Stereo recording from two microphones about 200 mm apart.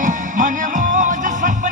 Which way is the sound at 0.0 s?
40° right (ahead or behind).